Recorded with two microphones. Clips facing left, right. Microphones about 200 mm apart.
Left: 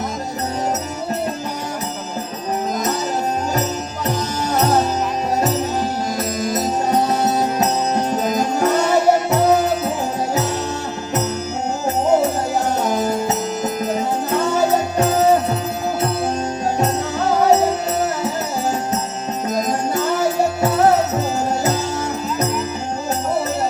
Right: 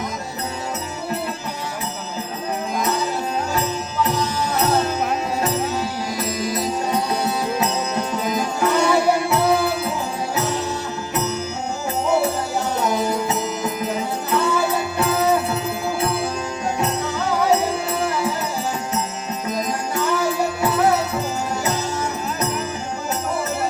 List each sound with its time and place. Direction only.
3.5 s music: 40° left (ahead or behind)
12.0 s music: 40° left (ahead or behind)
19.5 s music: 45° left (ahead or behind)